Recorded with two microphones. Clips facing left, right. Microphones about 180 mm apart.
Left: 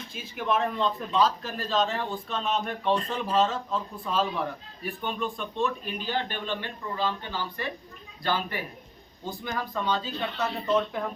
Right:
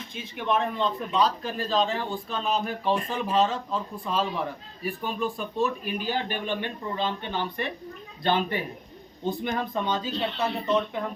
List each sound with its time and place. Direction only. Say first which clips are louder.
0.1 s a man's voice: right 1 dB; 5° left (ahead or behind); by 10.6 s 25° right (ahead or behind)
10.7 s a man's voice: left 1 dB; centre (ahead or behind)